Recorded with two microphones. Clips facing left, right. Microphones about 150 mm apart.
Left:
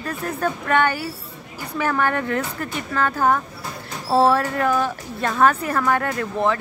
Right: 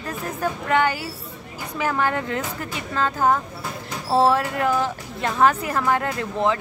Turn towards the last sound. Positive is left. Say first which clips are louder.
# left 1 dB
turn(degrees=-20)  # may be behind; listen again after turning